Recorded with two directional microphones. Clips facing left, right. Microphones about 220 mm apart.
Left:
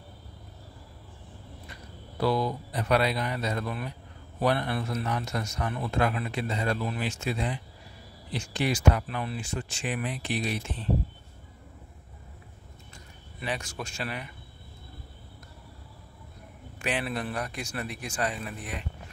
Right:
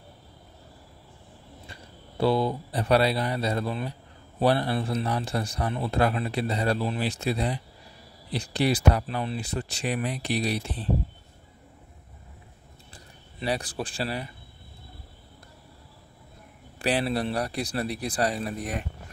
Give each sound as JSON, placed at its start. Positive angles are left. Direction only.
{"t": 1.7, "sound": "a man's voice", "side_deg": -30}
{"t": 12.9, "sound": "speech", "side_deg": -35}
{"t": 16.7, "sound": "a man's voice", "side_deg": -35}